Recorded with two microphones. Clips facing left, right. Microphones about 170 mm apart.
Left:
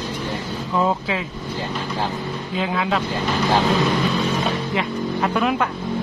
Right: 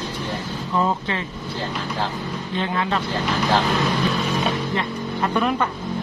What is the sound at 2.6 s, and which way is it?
Speech, 5° left (ahead or behind).